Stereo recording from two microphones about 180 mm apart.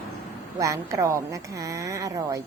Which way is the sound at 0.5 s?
15° right (ahead or behind).